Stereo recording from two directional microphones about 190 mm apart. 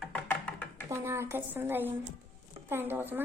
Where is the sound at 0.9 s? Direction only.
15° right (ahead or behind).